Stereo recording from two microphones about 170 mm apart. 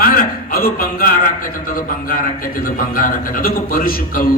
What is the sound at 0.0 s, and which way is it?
A man's voice, 55° left (ahead or behind).